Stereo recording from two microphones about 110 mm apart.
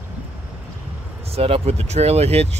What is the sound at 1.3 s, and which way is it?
Speech, 60° right (ahead or behind).